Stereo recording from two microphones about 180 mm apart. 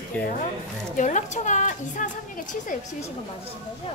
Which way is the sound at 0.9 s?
45° left (ahead or behind).